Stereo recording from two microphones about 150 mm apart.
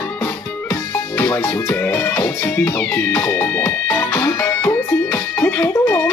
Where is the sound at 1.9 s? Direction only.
15° left (ahead or behind).